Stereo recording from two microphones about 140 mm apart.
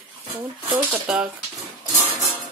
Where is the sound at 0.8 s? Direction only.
10° right (ahead or behind).